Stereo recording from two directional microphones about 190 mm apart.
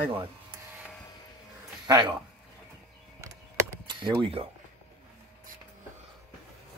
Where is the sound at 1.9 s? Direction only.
25° right (ahead or behind).